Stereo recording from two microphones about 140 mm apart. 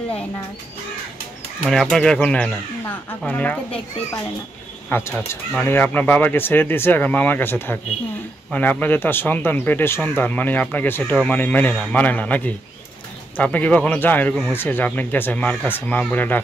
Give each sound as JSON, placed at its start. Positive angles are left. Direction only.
{"t": 1.7, "sound": "speech", "side_deg": 5}
{"t": 4.8, "sound": "speech", "side_deg": 15}